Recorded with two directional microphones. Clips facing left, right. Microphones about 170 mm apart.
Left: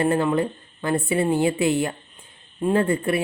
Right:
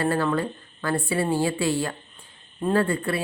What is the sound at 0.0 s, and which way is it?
Speech, 20° left (ahead or behind).